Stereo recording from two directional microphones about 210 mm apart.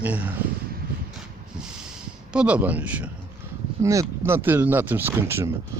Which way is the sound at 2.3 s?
5° right (ahead or behind).